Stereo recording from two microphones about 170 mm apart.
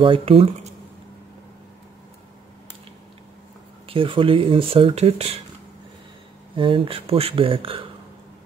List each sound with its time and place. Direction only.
0.0 s speech: 30° right (ahead or behind)
3.8 s speech: 30° right (ahead or behind)
6.5 s speech: 30° right (ahead or behind)